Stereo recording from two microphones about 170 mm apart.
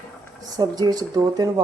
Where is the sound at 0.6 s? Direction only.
25° right (ahead or behind).